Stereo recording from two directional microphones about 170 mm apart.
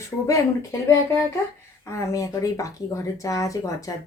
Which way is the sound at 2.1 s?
20° left (ahead or behind).